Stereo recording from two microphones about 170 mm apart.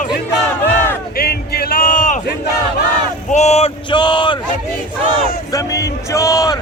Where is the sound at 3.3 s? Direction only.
40° left (ahead or behind).